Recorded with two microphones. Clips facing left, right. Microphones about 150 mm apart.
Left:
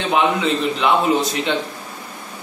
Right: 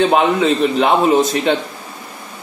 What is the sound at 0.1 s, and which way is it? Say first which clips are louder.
Speech: right 4 dB; 45° right (ahead or behind).